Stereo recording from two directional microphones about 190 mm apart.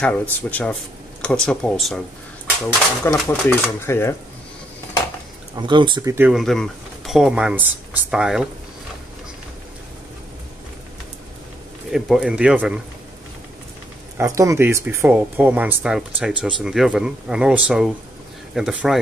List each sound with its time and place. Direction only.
0.0 s speech: 10° left (ahead or behind)
3.1 s speech: 10° left (ahead or behind)
5.6 s speech: 25° right (ahead or behind)
6.1 s speech: 5° right (ahead or behind)
11.9 s speech: centre (ahead or behind)
14.1 s speech: 15° right (ahead or behind)